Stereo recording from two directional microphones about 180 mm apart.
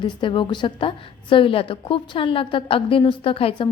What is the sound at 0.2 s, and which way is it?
A woman's voice, 25° left (ahead or behind).